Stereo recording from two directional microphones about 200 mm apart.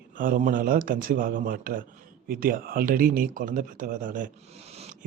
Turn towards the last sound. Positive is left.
turn(degrees=-30)  # may be behind; listen again after turning